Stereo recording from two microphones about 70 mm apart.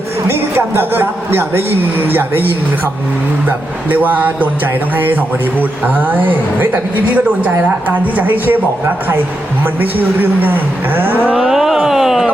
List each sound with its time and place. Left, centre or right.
0.3 s a man's voice: right
3.8 s a man's voice: right
9.8 s a man's voice: right
11.3 s a sound: centre